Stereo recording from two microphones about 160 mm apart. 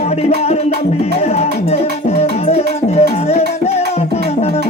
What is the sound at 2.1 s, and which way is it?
Music, 40° left (ahead or behind).